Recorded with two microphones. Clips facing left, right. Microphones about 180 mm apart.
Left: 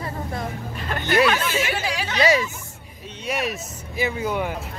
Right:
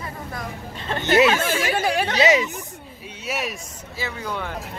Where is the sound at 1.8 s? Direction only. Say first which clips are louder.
Right 5 dB; 55° right (ahead or behind).